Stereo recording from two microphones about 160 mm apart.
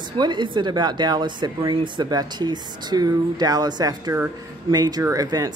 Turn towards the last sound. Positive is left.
turn(degrees=-20)  # may be behind; listen again after turning